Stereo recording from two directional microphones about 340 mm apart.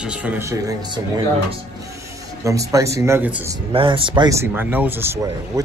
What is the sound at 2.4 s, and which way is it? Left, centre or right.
Speech, centre.